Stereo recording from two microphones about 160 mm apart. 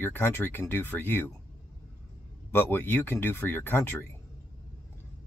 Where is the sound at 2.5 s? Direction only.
10° left (ahead or behind).